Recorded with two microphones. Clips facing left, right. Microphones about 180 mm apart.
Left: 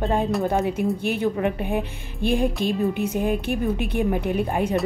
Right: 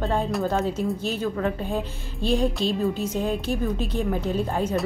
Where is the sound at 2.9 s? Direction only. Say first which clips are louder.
Left 3 dB; 60° left (ahead or behind).